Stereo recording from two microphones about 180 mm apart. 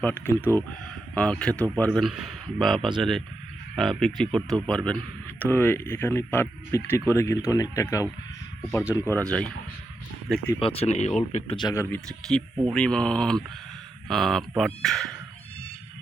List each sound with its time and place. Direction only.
0.0 s speech: 10° left (ahead or behind)
10.6 s speech: 30° left (ahead or behind)
11.5 s speech: 20° left (ahead or behind)
11.9 s speech: 5° left (ahead or behind)